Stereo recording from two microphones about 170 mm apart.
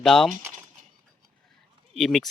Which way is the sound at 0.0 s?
Centre (ahead or behind).